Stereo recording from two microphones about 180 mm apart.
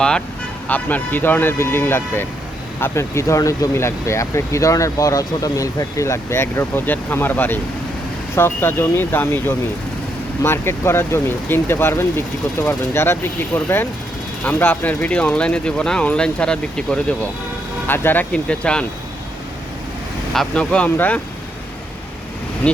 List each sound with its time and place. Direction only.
0.7 s speech: 10° left (ahead or behind)
20.3 s speech: 5° left (ahead or behind)